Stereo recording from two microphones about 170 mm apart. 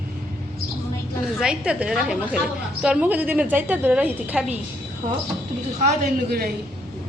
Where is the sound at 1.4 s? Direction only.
5° right (ahead or behind).